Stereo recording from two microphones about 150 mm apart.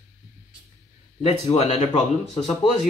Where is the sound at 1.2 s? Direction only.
45° left (ahead or behind).